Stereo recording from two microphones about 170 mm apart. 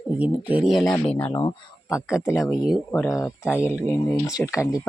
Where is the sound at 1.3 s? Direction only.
20° left (ahead or behind).